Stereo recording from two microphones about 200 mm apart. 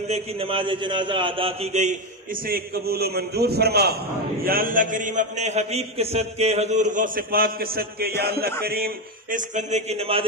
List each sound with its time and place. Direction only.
0.1 s a man's voice: 30° right (ahead or behind)
2.4 s a man's voice: 50° right (ahead or behind); by 10.2 s 30° right (ahead or behind)